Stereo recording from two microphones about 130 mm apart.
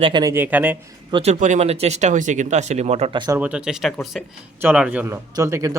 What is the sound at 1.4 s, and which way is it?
Speech, 65° right (ahead or behind).